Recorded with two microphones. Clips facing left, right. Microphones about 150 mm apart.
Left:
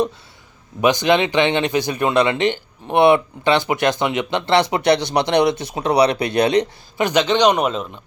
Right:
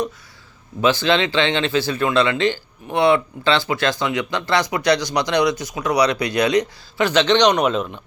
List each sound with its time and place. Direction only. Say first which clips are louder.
0.8 s speech: left 2 dB; 15° left (ahead or behind)
7.0 s speech: even; 10° left (ahead or behind)